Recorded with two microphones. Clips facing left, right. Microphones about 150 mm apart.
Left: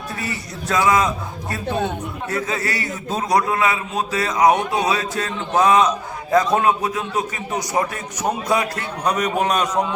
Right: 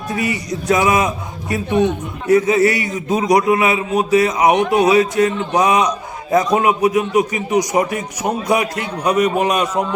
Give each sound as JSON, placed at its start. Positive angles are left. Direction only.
{"t": 0.2, "sound": "a man's voice", "side_deg": -15}